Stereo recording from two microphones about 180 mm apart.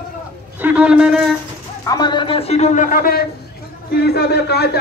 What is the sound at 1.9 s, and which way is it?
A man's voice, 25° left (ahead or behind).